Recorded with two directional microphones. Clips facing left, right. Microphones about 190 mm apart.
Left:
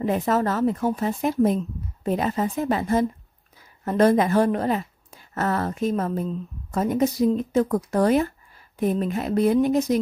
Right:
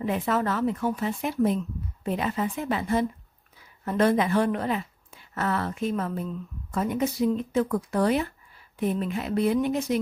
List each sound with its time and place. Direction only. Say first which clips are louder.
0.0 s speech: left 4 dB; 40° left (ahead or behind)